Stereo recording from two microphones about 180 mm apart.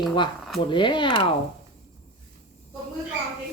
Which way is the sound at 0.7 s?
25° left (ahead or behind).